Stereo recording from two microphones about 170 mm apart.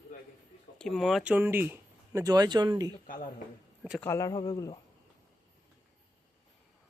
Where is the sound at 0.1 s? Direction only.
50° left (ahead or behind).